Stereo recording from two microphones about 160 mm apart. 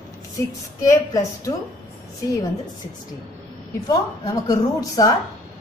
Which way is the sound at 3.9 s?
25° left (ahead or behind).